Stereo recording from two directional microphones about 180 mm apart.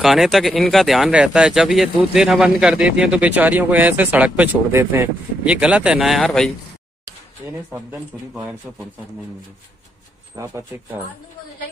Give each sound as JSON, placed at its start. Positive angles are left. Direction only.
{"t": 0.0, "sound": "speech", "side_deg": 0}
{"t": 8.7, "sound": "speech", "side_deg": -5}
{"t": 10.3, "sound": "speech", "side_deg": -20}